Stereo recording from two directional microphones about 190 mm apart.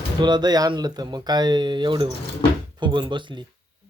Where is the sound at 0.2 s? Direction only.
20° right (ahead or behind).